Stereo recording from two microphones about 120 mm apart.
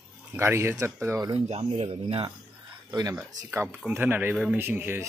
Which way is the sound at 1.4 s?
60° right (ahead or behind).